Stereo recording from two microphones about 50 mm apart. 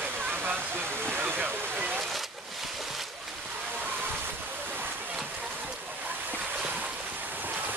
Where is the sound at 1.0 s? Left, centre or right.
Right.